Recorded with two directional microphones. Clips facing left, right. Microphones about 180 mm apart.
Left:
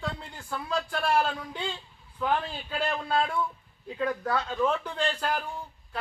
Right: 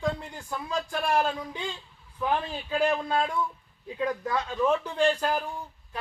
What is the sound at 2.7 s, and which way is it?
Speech, 15° right (ahead or behind).